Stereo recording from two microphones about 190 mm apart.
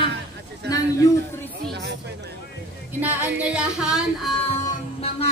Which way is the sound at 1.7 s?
65° right (ahead or behind).